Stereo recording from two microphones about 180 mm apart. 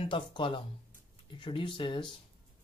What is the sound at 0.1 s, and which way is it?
Speech, 25° left (ahead or behind).